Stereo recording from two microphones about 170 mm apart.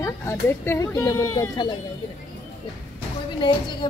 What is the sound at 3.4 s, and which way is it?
Speech, 30° left (ahead or behind).